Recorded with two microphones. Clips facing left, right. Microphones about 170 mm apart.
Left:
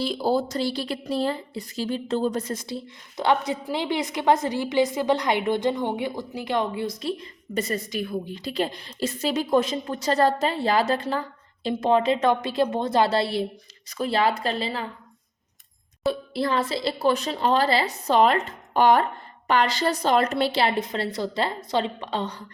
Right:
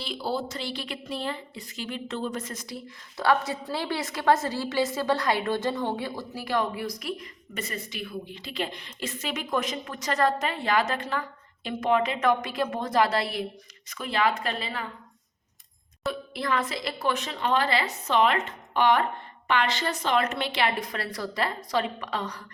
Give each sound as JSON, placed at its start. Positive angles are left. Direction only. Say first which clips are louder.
{"t": 0.0, "sound": "speech", "louder": "left 7 dB", "side_deg": 40}
{"t": 16.3, "sound": "a woman's voice", "louder": "left 4 dB", "side_deg": 30}